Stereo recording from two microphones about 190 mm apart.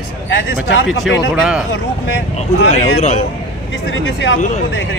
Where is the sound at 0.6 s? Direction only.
5° right (ahead or behind).